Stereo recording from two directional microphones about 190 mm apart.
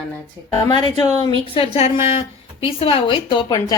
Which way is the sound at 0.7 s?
25° left (ahead or behind).